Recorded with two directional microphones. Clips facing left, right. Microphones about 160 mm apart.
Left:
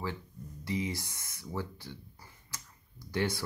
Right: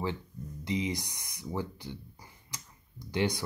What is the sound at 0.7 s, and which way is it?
Speech, 20° right (ahead or behind).